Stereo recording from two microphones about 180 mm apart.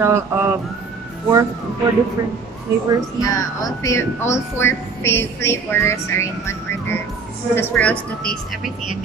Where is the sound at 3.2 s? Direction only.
20° left (ahead or behind).